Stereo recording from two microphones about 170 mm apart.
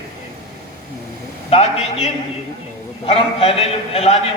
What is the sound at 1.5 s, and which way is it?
A man's voice, 35° left (ahead or behind).